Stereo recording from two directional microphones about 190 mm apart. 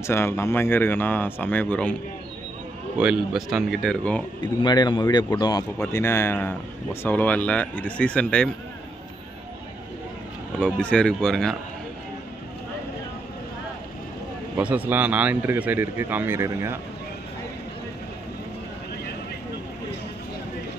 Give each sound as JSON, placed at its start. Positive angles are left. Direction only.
{"t": 0.0, "sound": "speech", "side_deg": 15}
{"t": 3.0, "sound": "speech", "side_deg": -5}
{"t": 4.4, "sound": "a man's voice", "side_deg": 25}
{"t": 10.6, "sound": "speech", "side_deg": 5}
{"t": 14.6, "sound": "a man's voice", "side_deg": -10}